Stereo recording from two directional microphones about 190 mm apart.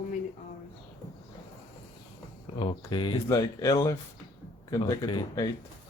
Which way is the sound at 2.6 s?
25° left (ahead or behind).